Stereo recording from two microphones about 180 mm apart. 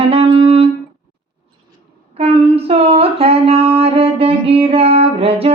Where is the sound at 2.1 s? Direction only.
35° right (ahead or behind).